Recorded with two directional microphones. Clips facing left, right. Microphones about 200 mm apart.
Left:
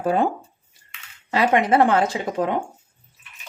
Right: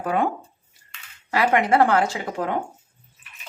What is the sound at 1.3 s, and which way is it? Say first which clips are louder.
Speech: left 1 dB; 20° left (ahead or behind).